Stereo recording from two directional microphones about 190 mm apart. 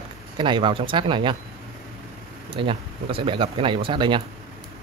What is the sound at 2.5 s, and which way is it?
Speech, 25° right (ahead or behind).